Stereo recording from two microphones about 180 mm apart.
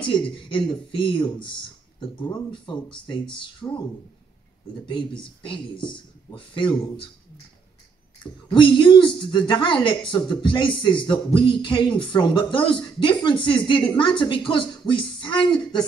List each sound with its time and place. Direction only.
0.3 s speech: 25° left (ahead or behind)
3.6 s speech: 15° left (ahead or behind)
5.4 s speech: 25° left (ahead or behind)
8.5 s speech: 25° left (ahead or behind)